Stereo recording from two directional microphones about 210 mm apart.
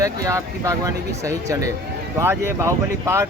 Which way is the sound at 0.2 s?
15° right (ahead or behind).